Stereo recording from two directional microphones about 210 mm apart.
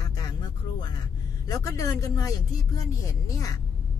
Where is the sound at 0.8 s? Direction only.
20° left (ahead or behind).